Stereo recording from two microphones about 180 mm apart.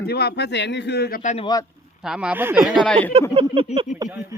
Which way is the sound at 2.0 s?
5° right (ahead or behind).